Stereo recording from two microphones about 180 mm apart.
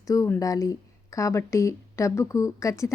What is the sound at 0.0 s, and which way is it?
Speech, 20° left (ahead or behind).